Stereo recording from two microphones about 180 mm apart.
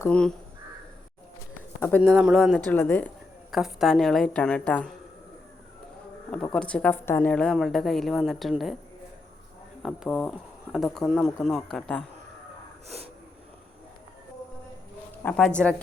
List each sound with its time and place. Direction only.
0.0 s a woman's voice: 5° left (ahead or behind)
2.0 s a woman's voice: 5° right (ahead or behind)
2.6 s speech: 10° left (ahead or behind)
3.5 s a woman's voice: centre (ahead or behind)
6.3 s a woman's voice: 5° left (ahead or behind)
9.8 s a woman's voice: centre (ahead or behind)
15.2 s speech: 5° left (ahead or behind)